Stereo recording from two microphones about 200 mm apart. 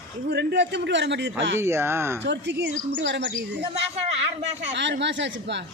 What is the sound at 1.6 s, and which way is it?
Speech, 15° right (ahead or behind).